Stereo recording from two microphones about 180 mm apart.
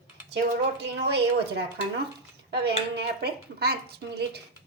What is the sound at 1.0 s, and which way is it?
A woman's voice, 65° right (ahead or behind).